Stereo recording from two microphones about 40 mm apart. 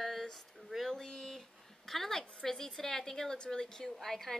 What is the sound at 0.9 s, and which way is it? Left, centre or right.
A woman's voice, centre.